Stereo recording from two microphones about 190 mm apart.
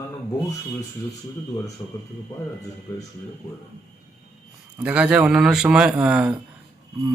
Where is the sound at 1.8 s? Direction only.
15° left (ahead or behind).